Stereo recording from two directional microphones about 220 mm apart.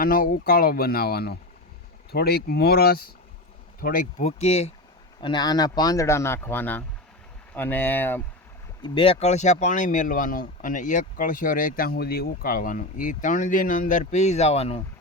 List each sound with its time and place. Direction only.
0.0 s speech: 40° left (ahead or behind); by 8.2 s 10° left (ahead or behind)
8.8 s speech: 25° left (ahead or behind)